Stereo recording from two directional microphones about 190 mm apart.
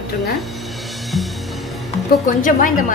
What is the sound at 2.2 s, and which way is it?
Speech, 45° left (ahead or behind).